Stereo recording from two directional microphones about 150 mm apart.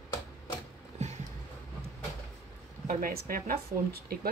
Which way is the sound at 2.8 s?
70° right (ahead or behind).